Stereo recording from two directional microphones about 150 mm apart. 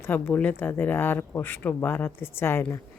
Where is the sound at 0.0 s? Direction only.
10° left (ahead or behind).